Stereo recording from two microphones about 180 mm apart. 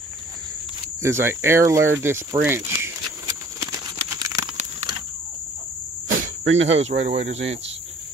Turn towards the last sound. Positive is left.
turn(degrees=-35)  # may be behind; listen again after turning